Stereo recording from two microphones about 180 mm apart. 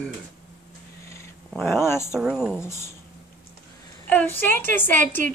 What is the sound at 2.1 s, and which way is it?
Speech, 5° right (ahead or behind).